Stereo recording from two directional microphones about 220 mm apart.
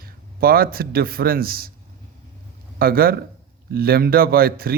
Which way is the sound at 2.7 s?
45° right (ahead or behind).